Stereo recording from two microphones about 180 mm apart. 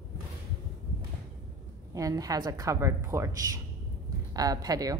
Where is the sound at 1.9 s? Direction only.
20° right (ahead or behind).